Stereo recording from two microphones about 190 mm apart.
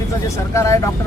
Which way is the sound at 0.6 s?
15° left (ahead or behind).